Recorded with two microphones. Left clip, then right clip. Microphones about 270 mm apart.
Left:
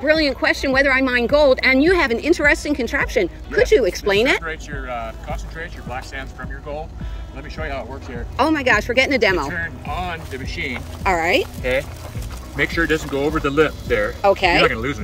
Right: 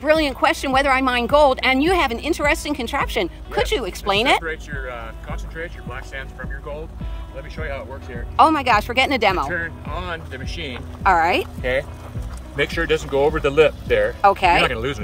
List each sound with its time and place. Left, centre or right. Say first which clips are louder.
0.3 s speech: even; centre
7.5 s speech: left 3 dB; centre
9.5 s speech: even; centre
11.0 s speech: right 3 dB; centre
11.3 s speech: left 2 dB; right